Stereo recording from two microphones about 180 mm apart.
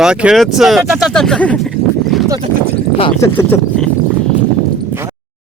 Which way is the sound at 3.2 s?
15° left (ahead or behind).